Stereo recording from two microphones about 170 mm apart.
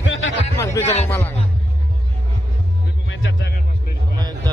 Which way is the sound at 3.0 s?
85° left.